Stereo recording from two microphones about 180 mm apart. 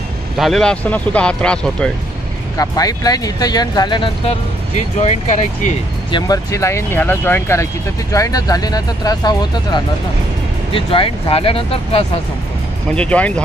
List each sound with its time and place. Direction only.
0.4 s speech: 5° left (ahead or behind)
2.5 s speech: 20° left (ahead or behind)
4.7 s speech: 40° left (ahead or behind)
6.1 s speech: 20° left (ahead or behind)
12.9 s speech: 5° left (ahead or behind)